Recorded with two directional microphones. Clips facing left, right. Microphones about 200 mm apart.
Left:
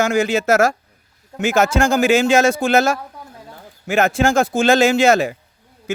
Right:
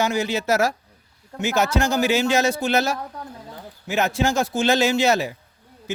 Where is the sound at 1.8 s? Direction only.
50° left (ahead or behind).